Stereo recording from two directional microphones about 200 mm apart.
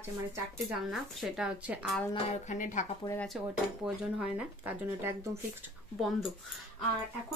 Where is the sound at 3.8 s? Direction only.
5° right (ahead or behind).